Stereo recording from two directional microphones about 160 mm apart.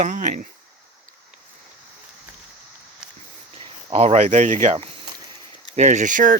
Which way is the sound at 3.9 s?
40° right (ahead or behind).